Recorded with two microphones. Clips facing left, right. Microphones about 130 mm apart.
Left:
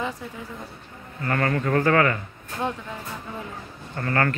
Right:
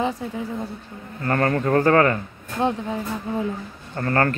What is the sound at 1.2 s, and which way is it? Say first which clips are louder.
Speech: right 3 dB; 35° right (ahead or behind).